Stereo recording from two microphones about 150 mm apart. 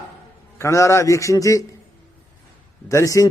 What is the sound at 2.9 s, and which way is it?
Speech, 20° left (ahead or behind).